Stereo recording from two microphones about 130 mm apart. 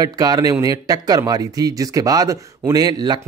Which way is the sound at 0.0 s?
30° right (ahead or behind).